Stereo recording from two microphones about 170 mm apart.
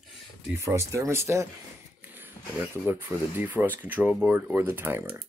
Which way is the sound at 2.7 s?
10° right (ahead or behind).